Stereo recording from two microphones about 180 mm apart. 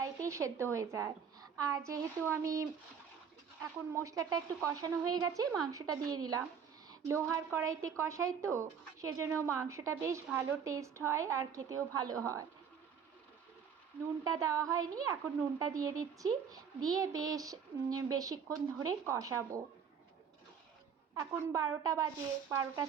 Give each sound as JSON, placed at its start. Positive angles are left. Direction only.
{"t": 0.0, "sound": "a woman's voice", "side_deg": -15}
{"t": 3.9, "sound": "speech", "side_deg": -20}
{"t": 14.3, "sound": "speech", "side_deg": -20}
{"t": 21.2, "sound": "speech", "side_deg": -15}